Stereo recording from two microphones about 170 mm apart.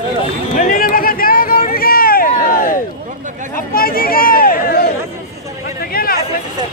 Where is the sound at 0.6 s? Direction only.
55° left (ahead or behind).